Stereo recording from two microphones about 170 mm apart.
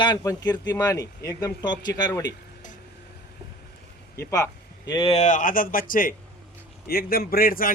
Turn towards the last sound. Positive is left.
turn(degrees=55)  # may be behind; listen again after turning